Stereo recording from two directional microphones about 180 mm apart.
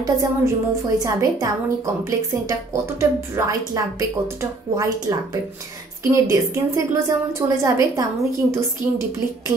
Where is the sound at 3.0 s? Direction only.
15° right (ahead or behind).